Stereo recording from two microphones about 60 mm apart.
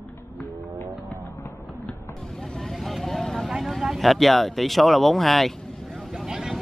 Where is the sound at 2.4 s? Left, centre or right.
Centre.